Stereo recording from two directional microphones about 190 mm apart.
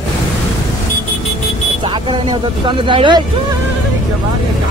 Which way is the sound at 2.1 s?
25° right (ahead or behind).